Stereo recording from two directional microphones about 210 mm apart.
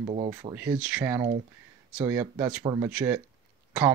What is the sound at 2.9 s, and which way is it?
Speech, 10° right (ahead or behind).